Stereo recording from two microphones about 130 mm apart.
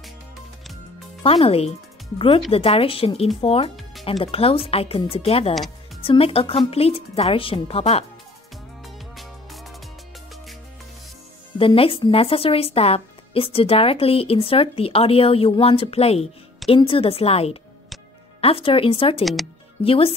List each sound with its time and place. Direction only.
1.2 s speech: 50° left (ahead or behind)
8.8 s music: centre (ahead or behind)
11.5 s speech: 45° left (ahead or behind)